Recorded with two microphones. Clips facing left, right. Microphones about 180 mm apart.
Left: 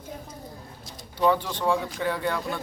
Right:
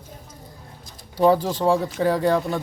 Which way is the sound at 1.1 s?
40° right (ahead or behind).